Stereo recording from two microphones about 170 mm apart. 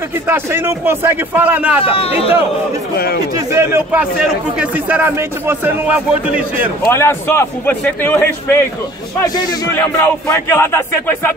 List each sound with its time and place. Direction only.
0.3 s speech: 15° right (ahead or behind)
1.8 s speech: 35° left (ahead or behind)
3.3 s speech: 15° right (ahead or behind)
6.9 s a man's voice: 15° left (ahead or behind)
9.8 s a man's voice: 10° left (ahead or behind)